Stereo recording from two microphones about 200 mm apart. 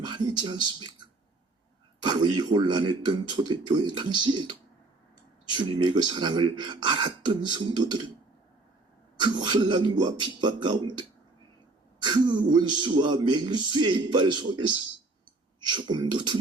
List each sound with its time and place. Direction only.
0.0 s speech: 20° right (ahead or behind)
9.2 s speech: 20° right (ahead or behind)
12.0 s speech: 20° right (ahead or behind)
15.7 s speech: 20° right (ahead or behind)